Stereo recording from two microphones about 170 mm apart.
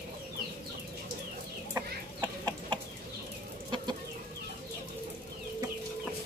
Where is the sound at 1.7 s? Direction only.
25° right (ahead or behind).